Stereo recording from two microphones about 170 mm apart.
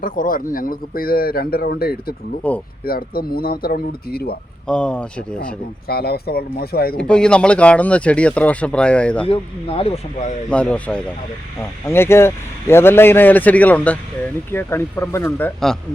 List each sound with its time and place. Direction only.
0.0 s speech: 55° left (ahead or behind)
2.4 s speech: 10° left (ahead or behind)
2.8 s speech: 60° left (ahead or behind)
4.6 s speech: 5° left (ahead or behind)
5.9 s speech: 65° left (ahead or behind)
6.9 s speech: 5° left (ahead or behind)
9.2 s speech: 35° left (ahead or behind)
10.5 s speech: 5° left (ahead or behind)